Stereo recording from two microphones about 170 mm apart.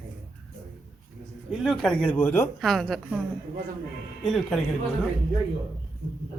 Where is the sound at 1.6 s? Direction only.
Centre (ahead or behind).